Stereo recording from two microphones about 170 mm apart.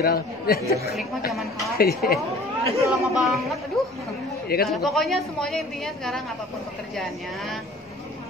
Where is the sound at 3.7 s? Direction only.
Centre (ahead or behind).